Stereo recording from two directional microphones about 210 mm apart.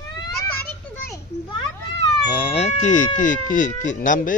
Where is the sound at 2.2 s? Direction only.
25° left (ahead or behind).